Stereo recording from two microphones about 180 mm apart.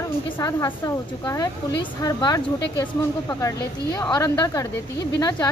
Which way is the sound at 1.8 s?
25° left (ahead or behind).